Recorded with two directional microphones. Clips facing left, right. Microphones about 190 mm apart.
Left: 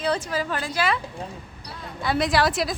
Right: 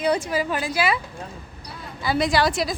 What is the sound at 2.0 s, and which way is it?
Speech, centre (ahead or behind).